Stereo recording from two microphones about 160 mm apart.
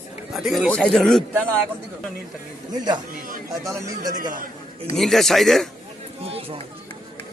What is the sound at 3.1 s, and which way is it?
Speech, 60° right (ahead or behind).